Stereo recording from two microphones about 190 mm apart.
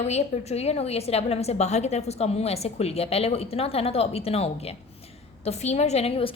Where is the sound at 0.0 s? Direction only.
35° left (ahead or behind).